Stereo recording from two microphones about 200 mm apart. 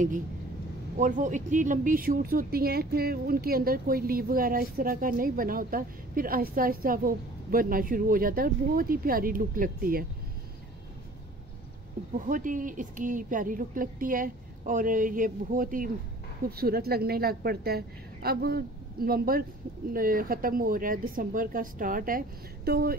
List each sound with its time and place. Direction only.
0.9 s a woman's voice: 40° right (ahead or behind)
12.2 s a woman's voice: 40° right (ahead or behind)